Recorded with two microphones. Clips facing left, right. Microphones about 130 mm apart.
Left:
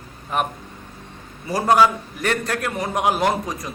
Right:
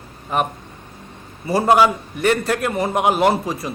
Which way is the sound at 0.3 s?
Centre (ahead or behind).